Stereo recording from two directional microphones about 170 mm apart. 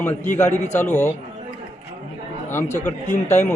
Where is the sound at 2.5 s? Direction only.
15° left (ahead or behind).